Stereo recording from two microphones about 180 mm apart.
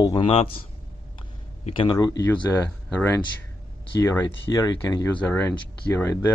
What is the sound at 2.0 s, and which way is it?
Speech, 20° left (ahead or behind).